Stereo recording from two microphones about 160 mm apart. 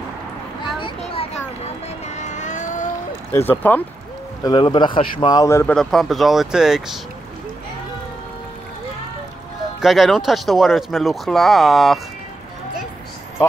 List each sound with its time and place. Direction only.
0.7 s a sound: 35° left (ahead or behind)
2.1 s vehicle: 45° left (ahead or behind)
3.3 s speech: 10° left (ahead or behind)
4.4 s speech: 30° left (ahead or behind)
5.8 s speech: centre (ahead or behind)
9.8 s speech: centre (ahead or behind)